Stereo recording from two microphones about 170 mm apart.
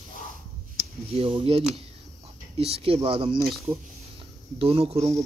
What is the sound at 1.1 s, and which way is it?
Speech, 35° right (ahead or behind).